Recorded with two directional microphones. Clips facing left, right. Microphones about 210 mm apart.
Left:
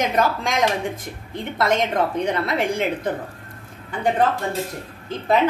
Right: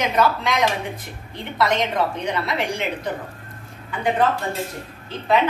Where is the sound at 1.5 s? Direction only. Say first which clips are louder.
Left 1 dB; 45° left (ahead or behind).